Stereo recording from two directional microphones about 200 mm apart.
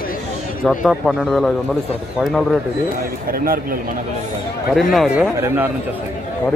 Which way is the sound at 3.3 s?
45° right (ahead or behind).